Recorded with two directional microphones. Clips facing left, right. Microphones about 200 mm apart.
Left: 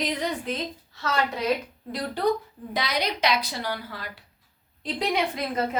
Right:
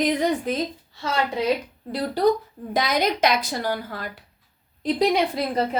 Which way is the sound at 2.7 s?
45° right (ahead or behind).